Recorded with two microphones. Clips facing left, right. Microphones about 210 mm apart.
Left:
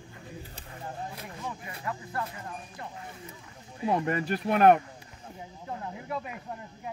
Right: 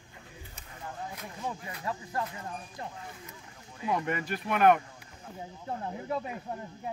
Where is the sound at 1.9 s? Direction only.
30° right (ahead or behind).